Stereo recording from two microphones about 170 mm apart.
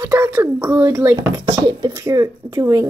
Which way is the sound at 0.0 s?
15° right (ahead or behind).